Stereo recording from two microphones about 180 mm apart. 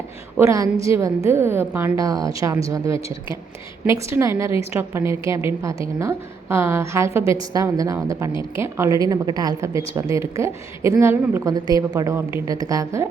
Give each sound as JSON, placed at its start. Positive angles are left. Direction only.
{"t": 0.3, "sound": "a woman's voice", "side_deg": -15}